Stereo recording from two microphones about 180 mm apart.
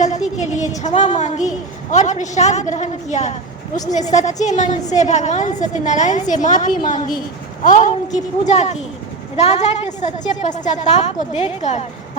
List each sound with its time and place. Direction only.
0.0 s a woman's voice: 40° left (ahead or behind)